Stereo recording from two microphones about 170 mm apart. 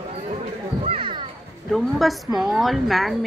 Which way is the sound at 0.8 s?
30° right (ahead or behind).